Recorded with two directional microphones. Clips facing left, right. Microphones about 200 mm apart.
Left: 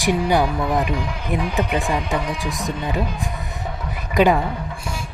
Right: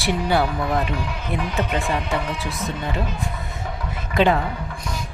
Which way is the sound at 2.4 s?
15° left (ahead or behind).